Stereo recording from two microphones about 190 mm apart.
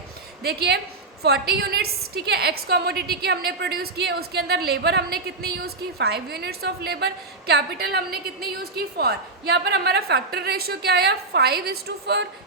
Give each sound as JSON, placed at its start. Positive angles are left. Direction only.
{"t": 0.4, "sound": "a woman's voice", "side_deg": -60}